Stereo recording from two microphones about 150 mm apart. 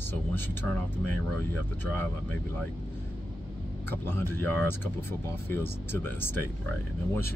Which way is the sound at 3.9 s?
15° left (ahead or behind).